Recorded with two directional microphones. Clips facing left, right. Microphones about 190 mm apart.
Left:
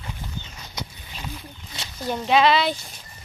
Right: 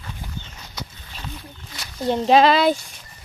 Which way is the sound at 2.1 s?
30° right (ahead or behind).